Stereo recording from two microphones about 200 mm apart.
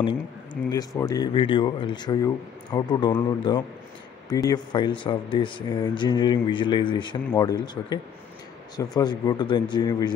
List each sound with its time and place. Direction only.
0.7 s speech: 15° left (ahead or behind)